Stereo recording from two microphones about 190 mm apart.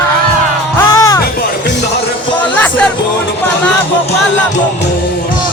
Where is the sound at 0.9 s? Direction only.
15° left (ahead or behind).